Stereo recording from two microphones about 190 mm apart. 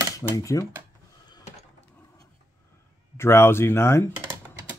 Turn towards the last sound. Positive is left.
turn(degrees=15)  # may be behind; listen again after turning